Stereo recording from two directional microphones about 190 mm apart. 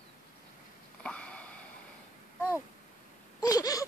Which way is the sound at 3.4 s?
20° left (ahead or behind).